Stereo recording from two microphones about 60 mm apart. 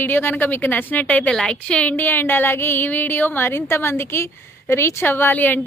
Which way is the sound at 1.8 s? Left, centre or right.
Left.